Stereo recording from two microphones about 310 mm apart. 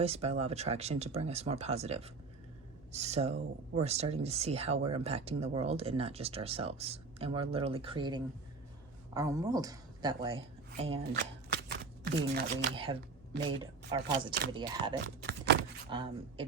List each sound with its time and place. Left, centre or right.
0.0 s speech: centre
11.1 s shuffling cards: right
12.7 s speech: centre
15.0 s speech: right
15.9 s speech: centre